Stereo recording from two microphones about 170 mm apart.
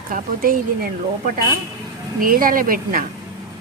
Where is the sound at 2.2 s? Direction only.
55° right (ahead or behind).